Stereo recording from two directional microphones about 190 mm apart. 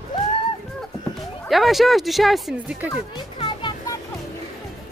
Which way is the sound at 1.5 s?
Centre (ahead or behind).